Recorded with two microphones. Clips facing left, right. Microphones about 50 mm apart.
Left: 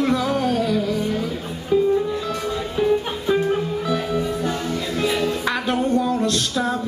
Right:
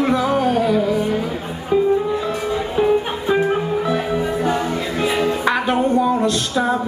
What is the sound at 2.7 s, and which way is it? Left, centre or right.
Music, right.